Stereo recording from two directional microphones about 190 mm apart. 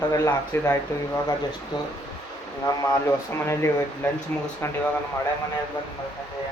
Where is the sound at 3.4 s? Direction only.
15° left (ahead or behind).